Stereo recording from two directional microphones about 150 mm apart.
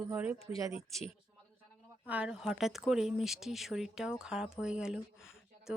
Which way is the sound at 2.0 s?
5° right (ahead or behind).